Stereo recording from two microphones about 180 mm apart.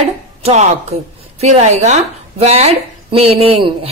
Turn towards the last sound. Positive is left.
turn(degrees=-30)  # may be behind; listen again after turning